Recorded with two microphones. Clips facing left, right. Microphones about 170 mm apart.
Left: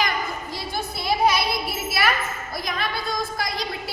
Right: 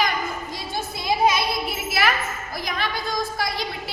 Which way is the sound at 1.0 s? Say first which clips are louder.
Even; 20° right (ahead or behind).